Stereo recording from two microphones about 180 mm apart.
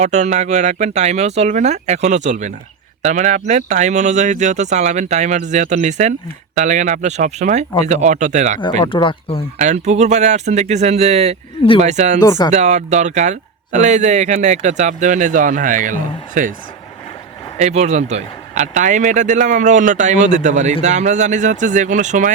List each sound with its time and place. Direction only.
0.0 s speech: 40° right (ahead or behind)
8.8 s speech: 25° left (ahead or behind)
9.6 s speech: 40° right (ahead or behind)
12.2 s speech: 20° left (ahead or behind)
12.5 s speech: 40° right (ahead or behind)
17.6 s speech: 40° right (ahead or behind)